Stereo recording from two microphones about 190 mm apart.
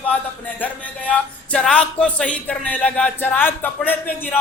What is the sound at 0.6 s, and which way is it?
Music, 5° left (ahead or behind).